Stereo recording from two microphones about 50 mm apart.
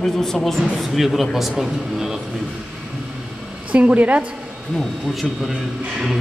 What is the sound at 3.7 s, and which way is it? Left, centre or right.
Speech, right.